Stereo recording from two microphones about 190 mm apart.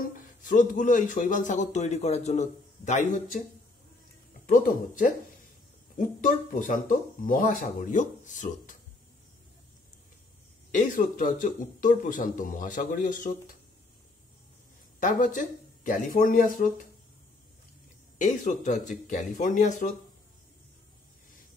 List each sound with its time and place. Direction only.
0.0 s speech: 45° left (ahead or behind)
4.5 s speech: 45° left (ahead or behind)
10.7 s speech: 45° left (ahead or behind)
15.0 s speech: 45° left (ahead or behind)
18.1 s speech: 40° left (ahead or behind)